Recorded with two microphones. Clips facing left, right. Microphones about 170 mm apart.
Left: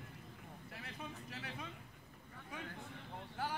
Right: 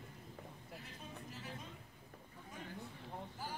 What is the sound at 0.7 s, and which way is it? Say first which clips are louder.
Vehicle: left 4 dB; 75° left (ahead or behind).